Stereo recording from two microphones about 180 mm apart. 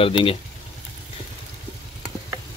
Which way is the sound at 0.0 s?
30° left (ahead or behind).